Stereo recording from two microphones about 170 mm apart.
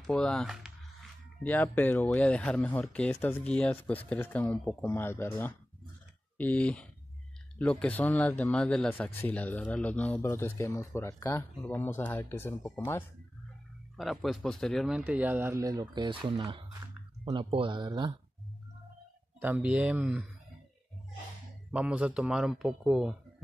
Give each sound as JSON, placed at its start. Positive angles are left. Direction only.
{"t": 0.0, "sound": "speech", "side_deg": 5}
{"t": 1.4, "sound": "speech", "side_deg": 10}
{"t": 13.9, "sound": "speech", "side_deg": 0}
{"t": 19.4, "sound": "speech", "side_deg": -10}
{"t": 21.6, "sound": "speech", "side_deg": -5}